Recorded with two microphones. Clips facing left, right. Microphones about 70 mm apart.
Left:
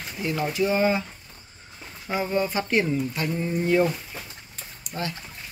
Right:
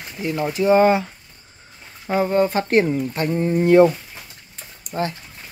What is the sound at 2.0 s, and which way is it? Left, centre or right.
Speech, right.